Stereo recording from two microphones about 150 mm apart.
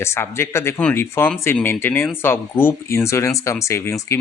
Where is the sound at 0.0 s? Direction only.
15° left (ahead or behind).